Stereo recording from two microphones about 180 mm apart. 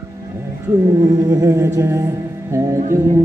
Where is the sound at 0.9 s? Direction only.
20° right (ahead or behind).